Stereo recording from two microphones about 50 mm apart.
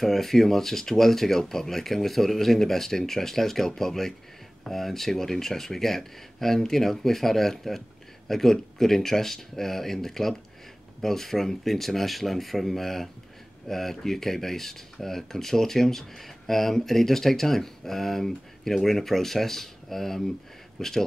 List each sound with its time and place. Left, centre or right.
0.0 s speech: centre